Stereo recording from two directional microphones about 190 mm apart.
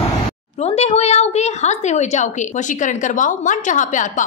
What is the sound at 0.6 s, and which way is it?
A woman's voice, 35° left (ahead or behind).